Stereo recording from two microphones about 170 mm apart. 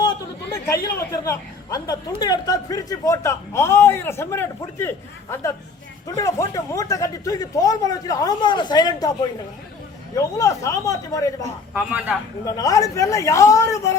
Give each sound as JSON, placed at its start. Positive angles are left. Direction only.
{"t": 0.7, "sound": "a woman's voice", "side_deg": 20}
{"t": 10.2, "sound": "speech", "side_deg": 20}
{"t": 11.7, "sound": "speech", "side_deg": -5}
{"t": 12.5, "sound": "speech", "side_deg": 20}